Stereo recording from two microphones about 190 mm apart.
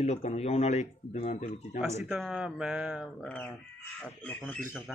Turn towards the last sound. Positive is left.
turn(degrees=0)  # may be behind; listen again after turning